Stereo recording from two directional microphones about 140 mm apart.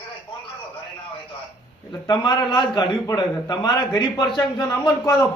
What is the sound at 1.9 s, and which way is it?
A man's voice, 30° left (ahead or behind).